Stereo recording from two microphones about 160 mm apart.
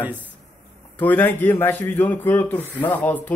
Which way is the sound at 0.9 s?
10° left (ahead or behind).